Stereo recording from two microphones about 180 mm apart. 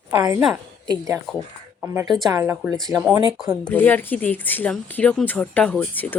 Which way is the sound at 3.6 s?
10° left (ahead or behind).